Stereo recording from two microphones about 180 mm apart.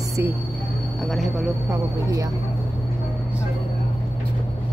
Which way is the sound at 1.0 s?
Centre (ahead or behind).